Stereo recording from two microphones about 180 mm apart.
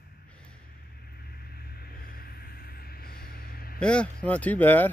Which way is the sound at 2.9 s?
55° left (ahead or behind).